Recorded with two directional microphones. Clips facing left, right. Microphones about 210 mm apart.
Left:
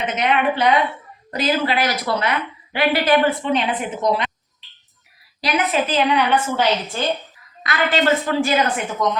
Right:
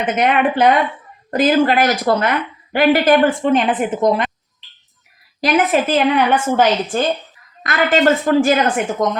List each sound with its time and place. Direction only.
0.2 s a woman's voice: 50° right (ahead or behind)
5.4 s a woman's voice: 50° right (ahead or behind)